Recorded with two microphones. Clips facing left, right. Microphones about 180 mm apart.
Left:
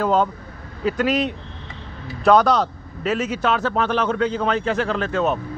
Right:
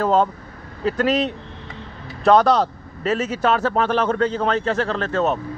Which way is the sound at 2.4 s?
30° right (ahead or behind).